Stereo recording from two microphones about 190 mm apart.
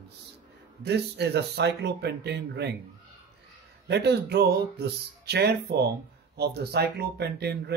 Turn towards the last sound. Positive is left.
turn(degrees=-60)  # may be behind; listen again after turning